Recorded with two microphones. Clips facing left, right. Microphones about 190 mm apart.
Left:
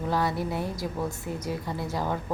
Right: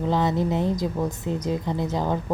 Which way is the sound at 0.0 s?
20° right (ahead or behind).